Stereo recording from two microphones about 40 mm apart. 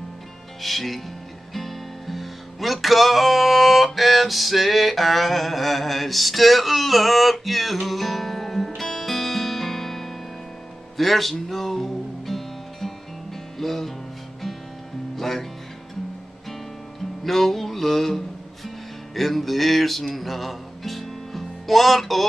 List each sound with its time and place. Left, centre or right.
0.6 s speech: centre
1.5 s music: centre
15.1 s music: centre
17.2 s music: centre